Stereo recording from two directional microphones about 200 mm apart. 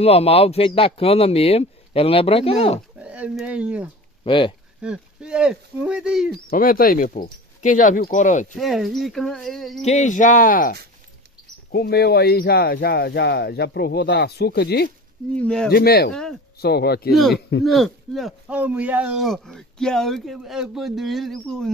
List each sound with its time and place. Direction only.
0.0 s speech: 30° left (ahead or behind)
3.0 s speech: 5° right (ahead or behind)
4.2 s speech: 25° left (ahead or behind)
4.8 s speech: 5° right (ahead or behind)
6.5 s speech: 45° left (ahead or behind)
8.5 s speech: centre (ahead or behind)
9.8 s speech: 35° left (ahead or behind); by 14.9 s 55° left (ahead or behind)
15.3 s speech: 5° left (ahead or behind)
15.7 s speech: 50° left (ahead or behind)
16.1 s speech: 5° left (ahead or behind)
16.5 s speech: 55° left (ahead or behind)
17.1 s speech: centre (ahead or behind)